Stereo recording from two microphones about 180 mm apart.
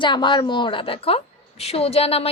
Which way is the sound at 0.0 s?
25° left (ahead or behind).